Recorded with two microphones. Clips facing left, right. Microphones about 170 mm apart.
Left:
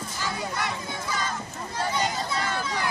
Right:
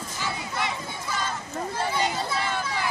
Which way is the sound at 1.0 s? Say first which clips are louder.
Right 1 dB; centre (ahead or behind).